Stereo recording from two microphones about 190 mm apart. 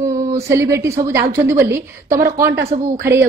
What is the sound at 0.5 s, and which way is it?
A woman's voice, 15° right (ahead or behind).